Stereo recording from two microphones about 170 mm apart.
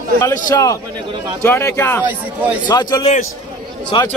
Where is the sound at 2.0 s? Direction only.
10° right (ahead or behind).